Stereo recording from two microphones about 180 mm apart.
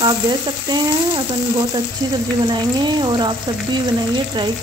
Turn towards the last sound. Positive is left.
turn(degrees=-25)  # may be behind; listen again after turning